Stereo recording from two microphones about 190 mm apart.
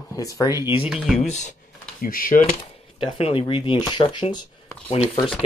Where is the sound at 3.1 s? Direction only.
30° left (ahead or behind).